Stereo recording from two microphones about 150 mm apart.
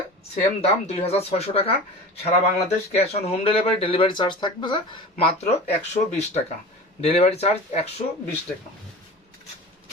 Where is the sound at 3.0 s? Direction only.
45° left (ahead or behind).